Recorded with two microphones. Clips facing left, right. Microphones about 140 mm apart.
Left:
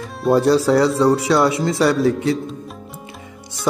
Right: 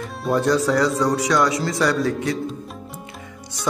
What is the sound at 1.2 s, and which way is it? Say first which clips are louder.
Music: left 3 dB; 25° left (ahead or behind).